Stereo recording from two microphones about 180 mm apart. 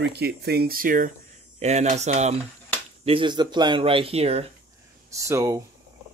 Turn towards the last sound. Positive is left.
turn(degrees=-15)  # may be behind; listen again after turning